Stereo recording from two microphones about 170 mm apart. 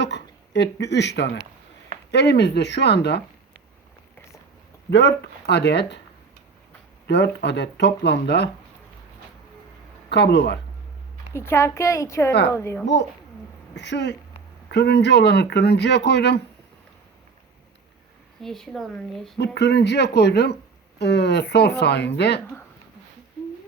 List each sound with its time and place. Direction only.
0.0 s speech: 90° left
4.9 s speech: 90° left
7.1 s speech: 90° left
10.1 s speech: 85° left
11.3 s a woman's voice: 15° left (ahead or behind)
13.7 s speech: 90° left
14.7 s speech: 80° left
18.4 s speech: centre (ahead or behind)
19.4 s speech: 80° left